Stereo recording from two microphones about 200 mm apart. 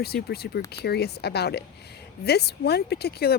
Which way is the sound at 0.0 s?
50° left (ahead or behind).